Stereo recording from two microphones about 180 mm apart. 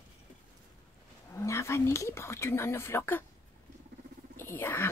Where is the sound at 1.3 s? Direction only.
15° left (ahead or behind).